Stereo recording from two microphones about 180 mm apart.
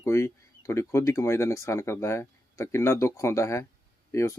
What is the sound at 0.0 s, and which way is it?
Speech, 15° left (ahead or behind).